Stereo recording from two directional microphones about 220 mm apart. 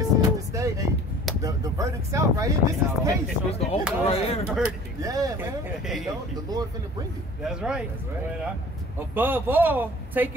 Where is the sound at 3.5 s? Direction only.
30° left (ahead or behind).